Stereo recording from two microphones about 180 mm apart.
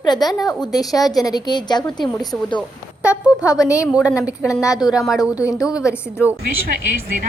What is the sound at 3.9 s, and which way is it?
Speech, 5° right (ahead or behind).